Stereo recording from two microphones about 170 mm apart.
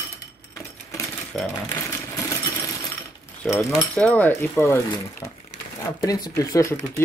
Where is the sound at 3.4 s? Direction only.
Centre (ahead or behind).